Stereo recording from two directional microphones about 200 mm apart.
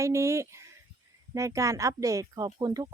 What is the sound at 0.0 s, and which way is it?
Speech, 15° right (ahead or behind).